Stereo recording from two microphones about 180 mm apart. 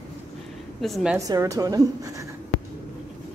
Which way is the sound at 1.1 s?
20° right (ahead or behind).